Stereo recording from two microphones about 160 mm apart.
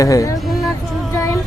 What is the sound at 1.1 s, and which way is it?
Music, 20° left (ahead or behind).